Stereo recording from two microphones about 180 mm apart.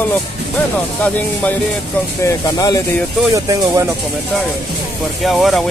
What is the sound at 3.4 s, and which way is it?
Speech, 15° right (ahead or behind).